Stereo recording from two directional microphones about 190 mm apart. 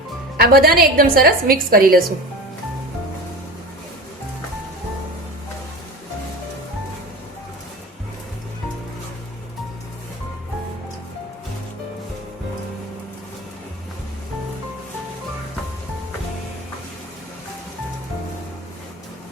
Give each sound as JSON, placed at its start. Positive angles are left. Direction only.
{"t": 0.3, "sound": "a woman's voice", "side_deg": -50}